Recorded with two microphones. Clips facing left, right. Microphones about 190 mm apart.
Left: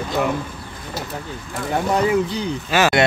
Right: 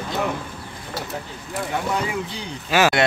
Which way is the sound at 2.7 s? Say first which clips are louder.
Left 1 dB; 10° right (ahead or behind).